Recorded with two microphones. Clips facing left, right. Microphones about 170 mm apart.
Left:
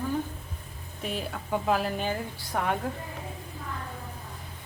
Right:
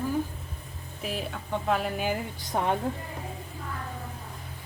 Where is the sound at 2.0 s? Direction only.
15° right (ahead or behind).